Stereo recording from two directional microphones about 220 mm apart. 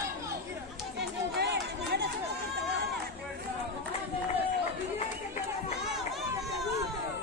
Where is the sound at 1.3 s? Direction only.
50° right (ahead or behind).